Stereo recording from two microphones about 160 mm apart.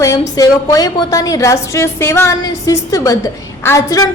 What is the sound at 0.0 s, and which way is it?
A woman's voice, 20° left (ahead or behind).